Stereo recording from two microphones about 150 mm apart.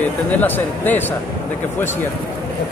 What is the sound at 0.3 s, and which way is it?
Speech, 10° left (ahead or behind).